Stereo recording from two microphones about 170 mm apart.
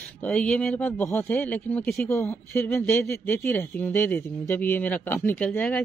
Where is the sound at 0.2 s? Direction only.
5° left (ahead or behind).